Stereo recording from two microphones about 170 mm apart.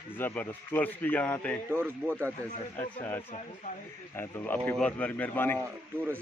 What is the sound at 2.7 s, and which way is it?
A man's voice, 10° left (ahead or behind).